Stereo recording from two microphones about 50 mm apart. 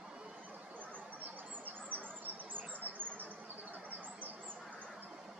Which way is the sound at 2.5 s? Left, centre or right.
Right.